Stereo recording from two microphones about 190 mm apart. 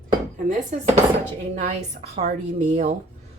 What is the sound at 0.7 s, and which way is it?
Speech, 40° right (ahead or behind).